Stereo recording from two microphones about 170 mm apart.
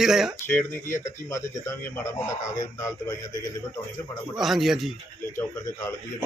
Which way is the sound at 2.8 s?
20° left (ahead or behind).